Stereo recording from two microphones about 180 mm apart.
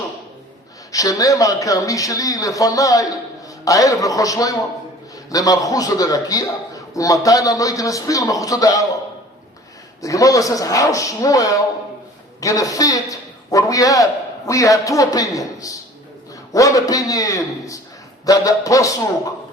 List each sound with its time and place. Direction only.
0.9 s a man's voice: 20° left (ahead or behind)
10.0 s a man's voice: 20° left (ahead or behind)
16.5 s a man's voice: 20° left (ahead or behind)